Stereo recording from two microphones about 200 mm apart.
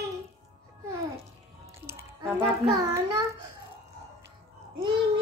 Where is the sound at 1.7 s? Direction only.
10° right (ahead or behind).